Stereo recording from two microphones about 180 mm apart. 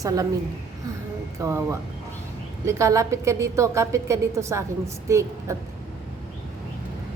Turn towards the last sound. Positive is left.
turn(degrees=-15)  # may be behind; listen again after turning